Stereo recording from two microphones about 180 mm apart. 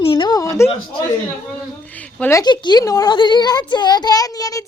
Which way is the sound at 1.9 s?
10° left (ahead or behind).